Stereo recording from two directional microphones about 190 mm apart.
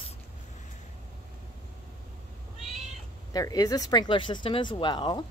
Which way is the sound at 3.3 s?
20° left (ahead or behind).